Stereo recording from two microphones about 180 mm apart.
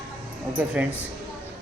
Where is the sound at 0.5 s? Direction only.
5° right (ahead or behind).